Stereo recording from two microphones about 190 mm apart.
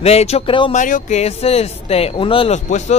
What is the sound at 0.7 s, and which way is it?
Speech, 40° left (ahead or behind).